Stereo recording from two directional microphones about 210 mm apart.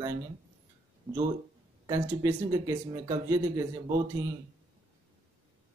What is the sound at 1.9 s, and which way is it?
Speech, 15° right (ahead or behind).